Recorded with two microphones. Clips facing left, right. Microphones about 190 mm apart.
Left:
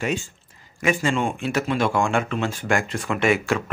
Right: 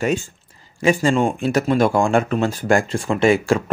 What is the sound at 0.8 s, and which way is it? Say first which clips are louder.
Speech: right 5 dB; 40° right (ahead or behind).